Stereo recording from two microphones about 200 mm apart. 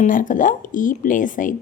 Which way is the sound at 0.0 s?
40° left (ahead or behind).